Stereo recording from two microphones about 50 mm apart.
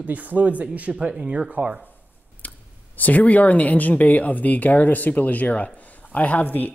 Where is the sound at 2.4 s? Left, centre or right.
Left.